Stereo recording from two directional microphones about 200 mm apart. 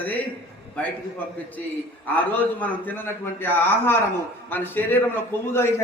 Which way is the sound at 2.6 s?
10° left (ahead or behind).